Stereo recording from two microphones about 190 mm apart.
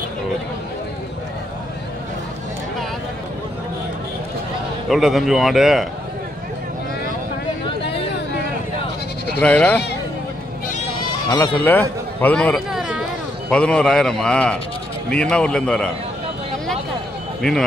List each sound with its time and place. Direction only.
4.8 s a man's voice: centre (ahead or behind)
9.4 s speech: 5° left (ahead or behind)
11.2 s speech: 25° left (ahead or behind)
12.2 s a man's voice: 10° left (ahead or behind)
17.4 s speech: centre (ahead or behind)